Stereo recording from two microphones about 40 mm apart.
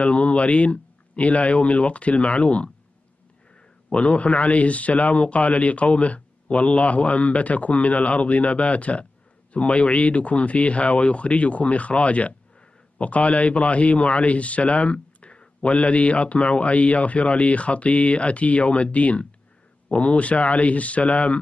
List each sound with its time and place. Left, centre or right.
0.0 s a man's voice: left
3.9 s a man's voice: left